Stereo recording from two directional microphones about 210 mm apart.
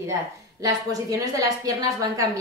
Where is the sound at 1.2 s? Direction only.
15° right (ahead or behind).